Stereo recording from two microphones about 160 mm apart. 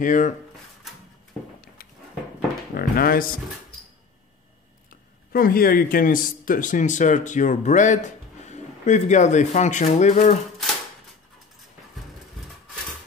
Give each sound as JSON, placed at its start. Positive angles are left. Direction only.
{"t": 0.0, "sound": "speech", "side_deg": 55}
{"t": 2.7, "sound": "speech", "side_deg": 65}
{"t": 5.3, "sound": "speech", "side_deg": 65}